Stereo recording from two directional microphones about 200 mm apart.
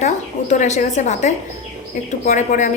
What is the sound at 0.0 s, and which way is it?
Speech, 35° left (ahead or behind).